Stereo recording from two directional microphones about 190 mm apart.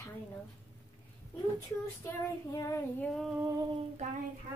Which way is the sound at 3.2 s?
5° right (ahead or behind).